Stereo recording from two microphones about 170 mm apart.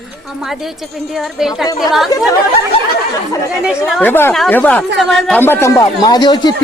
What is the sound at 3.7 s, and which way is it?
Speech, centre (ahead or behind).